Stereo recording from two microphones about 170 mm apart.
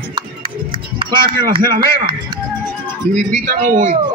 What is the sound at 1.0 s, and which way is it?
Music, 30° right (ahead or behind).